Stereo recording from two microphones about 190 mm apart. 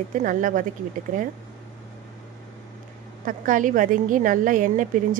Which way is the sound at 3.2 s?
45° right (ahead or behind).